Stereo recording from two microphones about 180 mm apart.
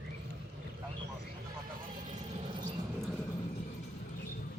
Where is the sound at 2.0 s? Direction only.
40° right (ahead or behind).